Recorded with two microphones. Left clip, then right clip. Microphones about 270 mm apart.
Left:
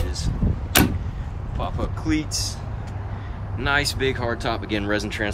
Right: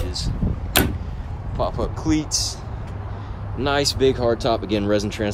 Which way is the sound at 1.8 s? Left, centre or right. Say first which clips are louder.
Right 3 dB; centre.